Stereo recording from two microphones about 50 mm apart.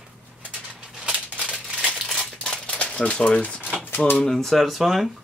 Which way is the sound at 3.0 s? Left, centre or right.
Left.